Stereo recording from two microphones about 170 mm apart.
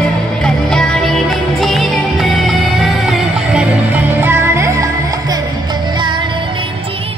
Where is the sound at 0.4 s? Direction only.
5° left (ahead or behind).